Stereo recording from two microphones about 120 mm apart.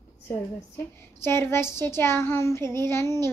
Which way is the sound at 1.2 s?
20° left (ahead or behind).